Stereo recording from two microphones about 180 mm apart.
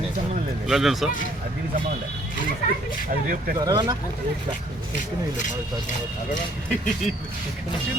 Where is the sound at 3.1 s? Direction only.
55° right (ahead or behind).